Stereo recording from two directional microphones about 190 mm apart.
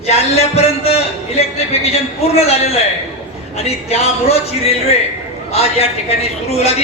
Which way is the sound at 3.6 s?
35° left (ahead or behind).